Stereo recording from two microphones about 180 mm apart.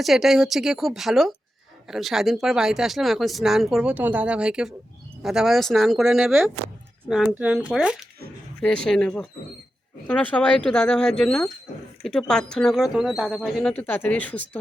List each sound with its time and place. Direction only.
0.0 s speech: centre (ahead or behind)